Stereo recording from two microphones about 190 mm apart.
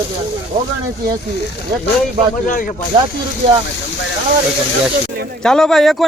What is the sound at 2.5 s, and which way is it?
Speech, 45° left (ahead or behind).